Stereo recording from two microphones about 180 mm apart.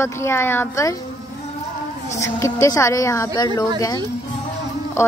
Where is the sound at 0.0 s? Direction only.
15° left (ahead or behind).